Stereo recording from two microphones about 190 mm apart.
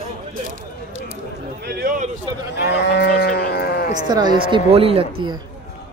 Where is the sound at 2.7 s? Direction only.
65° left (ahead or behind).